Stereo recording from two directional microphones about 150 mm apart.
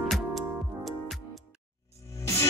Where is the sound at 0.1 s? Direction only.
Centre (ahead or behind).